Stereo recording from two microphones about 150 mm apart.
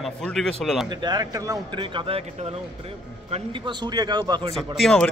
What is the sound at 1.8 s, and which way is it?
Speech, 35° right (ahead or behind).